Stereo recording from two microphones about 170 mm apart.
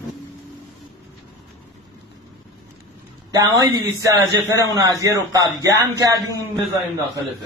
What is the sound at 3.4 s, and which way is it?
A man's voice, 20° right (ahead or behind).